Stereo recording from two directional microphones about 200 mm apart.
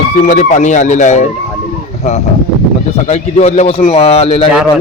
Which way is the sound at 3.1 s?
35° left (ahead or behind).